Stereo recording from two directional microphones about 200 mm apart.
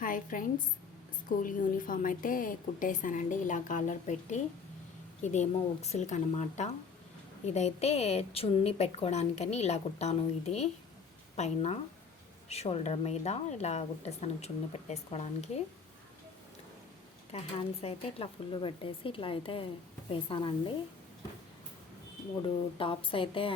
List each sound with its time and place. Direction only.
0.0 s a woman's voice: 45° left (ahead or behind)
17.3 s speech: 30° left (ahead or behind)
22.4 s speech: 25° left (ahead or behind)